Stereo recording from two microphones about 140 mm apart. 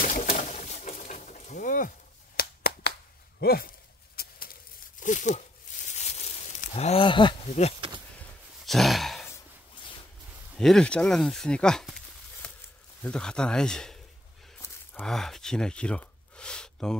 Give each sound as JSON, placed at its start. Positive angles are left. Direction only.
{"t": 0.0, "sound": "pigeon", "side_deg": 65}
{"t": 0.4, "sound": "bird", "side_deg": 55}
{"t": 3.4, "sound": "a sound", "side_deg": 90}
{"t": 5.0, "sound": "a sound", "side_deg": 60}
{"t": 7.4, "sound": "speech", "side_deg": 50}
{"t": 8.6, "sound": "sigh", "side_deg": 0}
{"t": 10.5, "sound": "speech", "side_deg": 5}
{"t": 15.0, "sound": "speech", "side_deg": 5}